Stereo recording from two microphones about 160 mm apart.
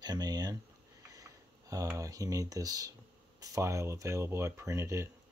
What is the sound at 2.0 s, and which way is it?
Speech, 20° right (ahead or behind).